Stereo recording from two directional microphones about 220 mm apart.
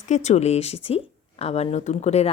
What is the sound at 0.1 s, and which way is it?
Speech, 30° left (ahead or behind).